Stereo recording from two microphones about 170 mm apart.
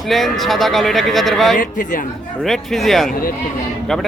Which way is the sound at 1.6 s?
50° left (ahead or behind).